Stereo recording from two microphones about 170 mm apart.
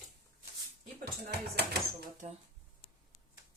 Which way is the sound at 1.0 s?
70° right (ahead or behind).